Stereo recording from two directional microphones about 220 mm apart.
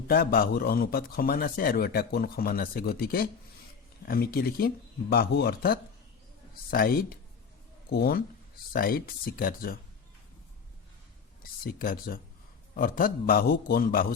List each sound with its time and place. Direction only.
0.1 s speech: 45° left (ahead or behind)
11.6 s speech: 40° left (ahead or behind)